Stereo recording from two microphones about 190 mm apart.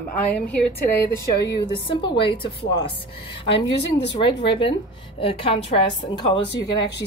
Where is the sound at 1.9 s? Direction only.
25° left (ahead or behind).